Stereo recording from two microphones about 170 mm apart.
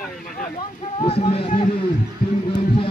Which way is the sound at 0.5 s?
35° left (ahead or behind).